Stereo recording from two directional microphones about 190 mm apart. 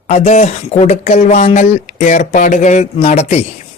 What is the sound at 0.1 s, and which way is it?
Speech, 35° left (ahead or behind).